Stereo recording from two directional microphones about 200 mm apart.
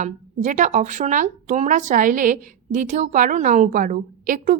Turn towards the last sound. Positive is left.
turn(degrees=-40)  # may be behind; listen again after turning